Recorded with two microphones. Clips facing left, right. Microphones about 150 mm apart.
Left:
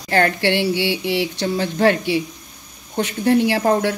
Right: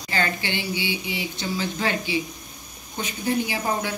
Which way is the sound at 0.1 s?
70° left (ahead or behind).